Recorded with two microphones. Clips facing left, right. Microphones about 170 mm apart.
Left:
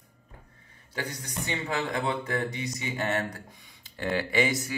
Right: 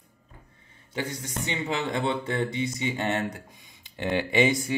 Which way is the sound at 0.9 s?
25° right (ahead or behind).